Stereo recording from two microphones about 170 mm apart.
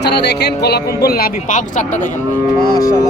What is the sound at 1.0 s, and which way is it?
Speech, 65° left (ahead or behind).